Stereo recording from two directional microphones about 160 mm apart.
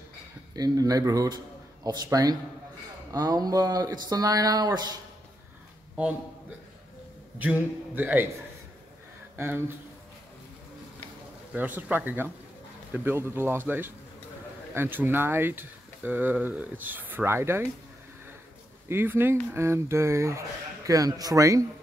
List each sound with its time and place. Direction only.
0.6 s a man's voice: 20° right (ahead or behind)
7.3 s speech: 10° right (ahead or behind)
11.5 s speech: 10° right (ahead or behind)
18.9 s speech: 15° right (ahead or behind)